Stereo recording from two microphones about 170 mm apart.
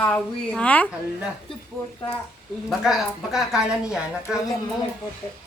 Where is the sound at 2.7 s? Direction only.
Centre (ahead or behind).